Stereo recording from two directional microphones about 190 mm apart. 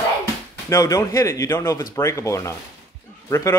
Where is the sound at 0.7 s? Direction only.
15° left (ahead or behind).